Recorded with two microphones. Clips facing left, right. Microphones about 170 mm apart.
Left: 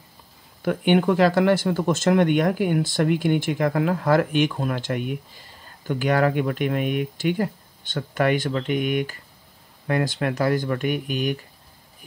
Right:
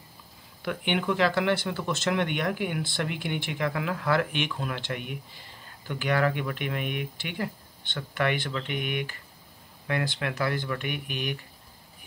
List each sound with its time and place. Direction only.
0.6 s speech: 45° left (ahead or behind)